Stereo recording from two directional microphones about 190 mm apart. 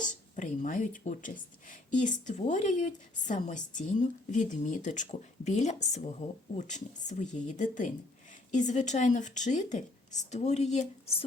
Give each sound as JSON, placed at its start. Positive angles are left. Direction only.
{"t": 0.3, "sound": "a woman's voice", "side_deg": 40}